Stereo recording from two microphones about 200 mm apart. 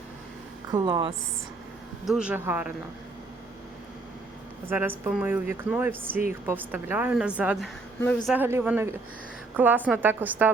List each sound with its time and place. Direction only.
0.7 s a woman's voice: 20° right (ahead or behind)
2.0 s speech: 5° right (ahead or behind)
4.7 s speech: 10° right (ahead or behind)